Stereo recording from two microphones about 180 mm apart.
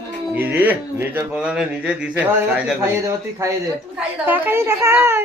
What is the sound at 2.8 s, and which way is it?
Speech, 15° right (ahead or behind).